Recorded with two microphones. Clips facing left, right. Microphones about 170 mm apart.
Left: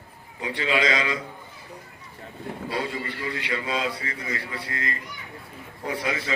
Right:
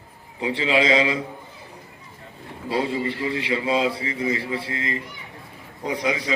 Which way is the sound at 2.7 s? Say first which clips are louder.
Right 8 dB; 25° right (ahead or behind).